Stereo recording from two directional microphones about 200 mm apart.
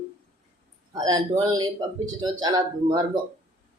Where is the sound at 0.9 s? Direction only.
20° right (ahead or behind).